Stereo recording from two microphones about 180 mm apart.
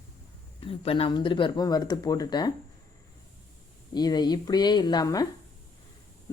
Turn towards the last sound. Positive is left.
turn(degrees=20)  # may be behind; listen again after turning